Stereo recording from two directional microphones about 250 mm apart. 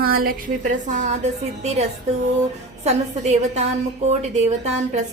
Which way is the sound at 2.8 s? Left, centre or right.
Right.